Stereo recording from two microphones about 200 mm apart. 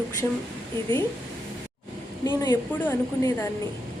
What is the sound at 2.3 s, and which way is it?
A woman's voice, 15° left (ahead or behind).